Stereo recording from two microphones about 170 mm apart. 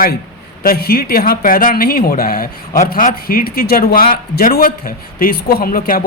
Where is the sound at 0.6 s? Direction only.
60° left (ahead or behind).